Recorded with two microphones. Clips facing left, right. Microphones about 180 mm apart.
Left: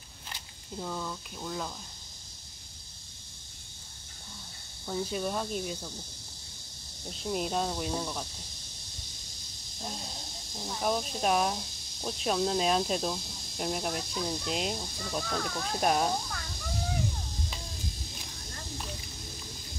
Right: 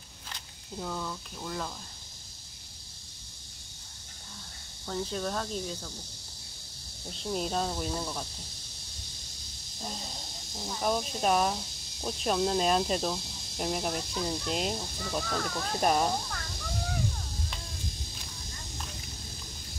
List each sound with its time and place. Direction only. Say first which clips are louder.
0.3 s speech: even; centre (ahead or behind)
4.8 s speech: left 1 dB; 10° left (ahead or behind)
7.1 s speech: even; 5° left (ahead or behind)
10.7 s speech: right 1 dB; centre (ahead or behind)